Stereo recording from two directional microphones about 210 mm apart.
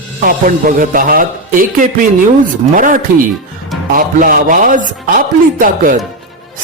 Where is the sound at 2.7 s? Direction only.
40° right (ahead or behind).